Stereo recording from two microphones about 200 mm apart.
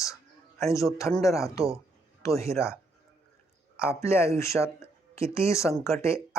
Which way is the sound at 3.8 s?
10° left (ahead or behind).